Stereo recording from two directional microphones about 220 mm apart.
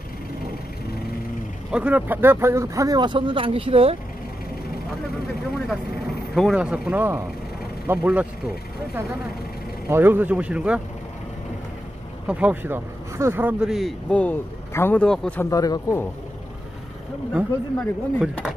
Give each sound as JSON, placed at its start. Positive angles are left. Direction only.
{"t": 1.7, "sound": "speech", "side_deg": -5}
{"t": 6.3, "sound": "speech", "side_deg": 0}
{"t": 9.8, "sound": "speech", "side_deg": -10}
{"t": 12.3, "sound": "speech", "side_deg": -5}
{"t": 15.5, "sound": "speech", "side_deg": 15}
{"t": 17.3, "sound": "speech", "side_deg": -5}